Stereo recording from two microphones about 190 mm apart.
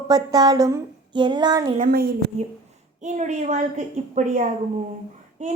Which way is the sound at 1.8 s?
50° right (ahead or behind).